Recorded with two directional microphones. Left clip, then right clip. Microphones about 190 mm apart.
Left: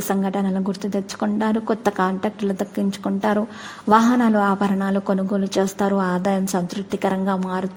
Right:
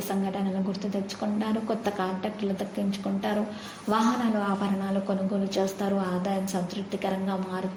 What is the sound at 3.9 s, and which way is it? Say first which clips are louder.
A woman's voice: left 10 dB; 45° left (ahead or behind).